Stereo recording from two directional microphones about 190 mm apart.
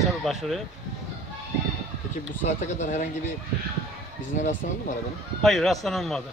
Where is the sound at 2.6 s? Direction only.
40° left (ahead or behind).